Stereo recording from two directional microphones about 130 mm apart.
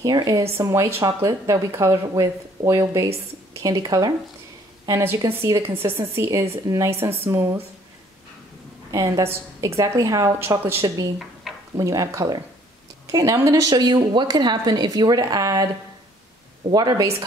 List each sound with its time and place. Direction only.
0.0 s speech: 30° right (ahead or behind)
8.9 s speech: 25° right (ahead or behind)
16.7 s speech: 30° right (ahead or behind)